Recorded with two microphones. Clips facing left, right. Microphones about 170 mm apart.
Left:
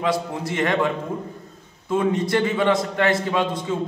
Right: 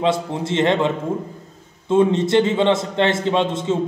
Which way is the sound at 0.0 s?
25° right (ahead or behind).